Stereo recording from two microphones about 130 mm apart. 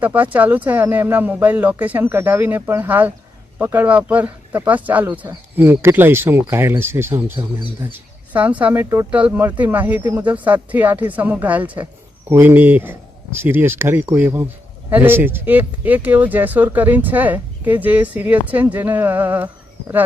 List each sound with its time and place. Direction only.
0.0 s speech: 10° right (ahead or behind)